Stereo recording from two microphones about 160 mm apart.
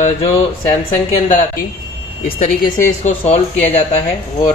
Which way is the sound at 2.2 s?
60° left (ahead or behind).